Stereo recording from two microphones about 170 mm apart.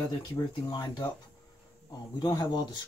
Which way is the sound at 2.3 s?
25° left (ahead or behind).